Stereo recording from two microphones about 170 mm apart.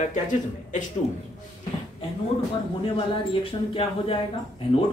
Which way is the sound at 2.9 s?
35° left (ahead or behind).